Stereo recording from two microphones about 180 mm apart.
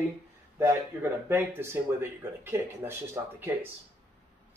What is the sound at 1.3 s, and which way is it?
Speech, 15° right (ahead or behind).